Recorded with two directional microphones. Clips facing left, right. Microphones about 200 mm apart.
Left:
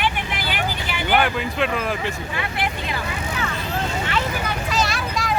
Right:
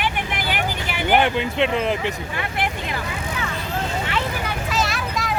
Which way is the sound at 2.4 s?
50° right (ahead or behind).